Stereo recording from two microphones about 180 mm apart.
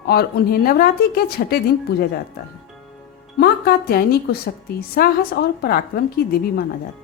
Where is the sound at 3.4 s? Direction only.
55° left (ahead or behind).